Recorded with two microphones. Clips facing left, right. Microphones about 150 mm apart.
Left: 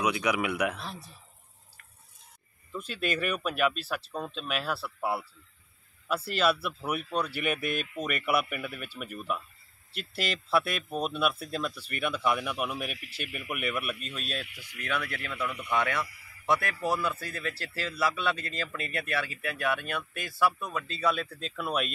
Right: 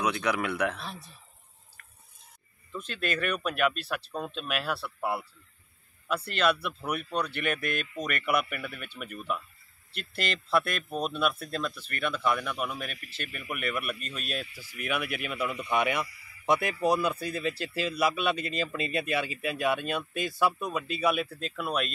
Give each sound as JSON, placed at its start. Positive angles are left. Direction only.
{"t": 0.0, "sound": "speech", "side_deg": 10}
{"t": 2.7, "sound": "speech", "side_deg": 5}
{"t": 14.5, "sound": "speech", "side_deg": 75}
{"t": 14.8, "sound": "a man's voice", "side_deg": -10}